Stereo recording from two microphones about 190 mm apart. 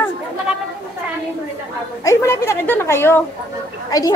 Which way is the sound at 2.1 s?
15° left (ahead or behind).